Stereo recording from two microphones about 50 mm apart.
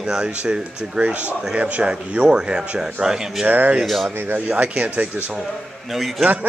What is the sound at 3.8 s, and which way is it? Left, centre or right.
Speech, centre.